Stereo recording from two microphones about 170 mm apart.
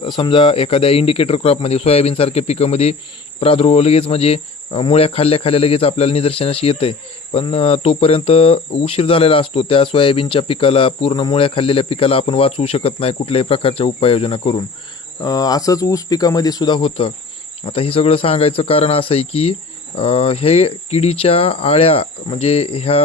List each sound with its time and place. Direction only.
0.0 s speech: 30° left (ahead or behind)
15.2 s speech: 20° left (ahead or behind)